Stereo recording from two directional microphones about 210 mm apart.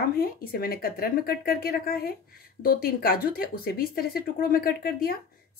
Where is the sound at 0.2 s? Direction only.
45° left (ahead or behind).